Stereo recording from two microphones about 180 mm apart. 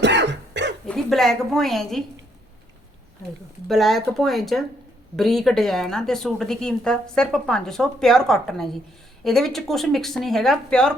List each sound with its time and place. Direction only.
0.0 s cough: 75° right (ahead or behind)
0.9 s a woman's voice: centre (ahead or behind)
3.7 s speech: centre (ahead or behind)